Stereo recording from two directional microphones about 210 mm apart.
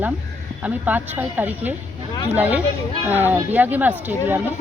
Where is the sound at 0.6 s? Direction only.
10° right (ahead or behind).